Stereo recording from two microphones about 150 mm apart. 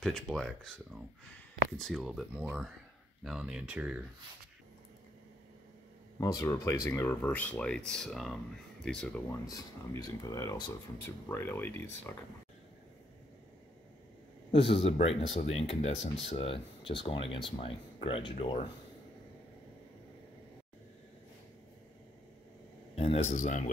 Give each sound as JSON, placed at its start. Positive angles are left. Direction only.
{"t": 0.0, "sound": "speech", "side_deg": 0}
{"t": 6.1, "sound": "speech", "side_deg": 20}
{"t": 9.5, "sound": "speech", "side_deg": 25}
{"t": 14.5, "sound": "speech", "side_deg": 40}
{"t": 22.9, "sound": "speech", "side_deg": 45}